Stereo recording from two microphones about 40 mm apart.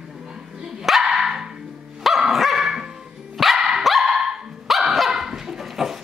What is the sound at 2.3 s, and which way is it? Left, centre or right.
Dog, centre.